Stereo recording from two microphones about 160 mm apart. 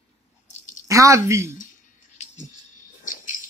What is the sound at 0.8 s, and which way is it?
Speech, 20° right (ahead or behind).